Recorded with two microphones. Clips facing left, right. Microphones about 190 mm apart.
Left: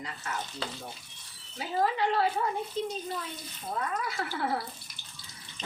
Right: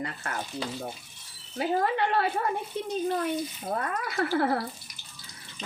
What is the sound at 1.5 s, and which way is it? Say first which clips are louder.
Speech: right 3 dB; 60° right (ahead or behind).